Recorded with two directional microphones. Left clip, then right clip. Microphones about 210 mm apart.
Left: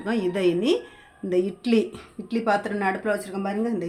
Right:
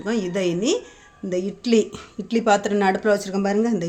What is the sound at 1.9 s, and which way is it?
Speech, 35° right (ahead or behind).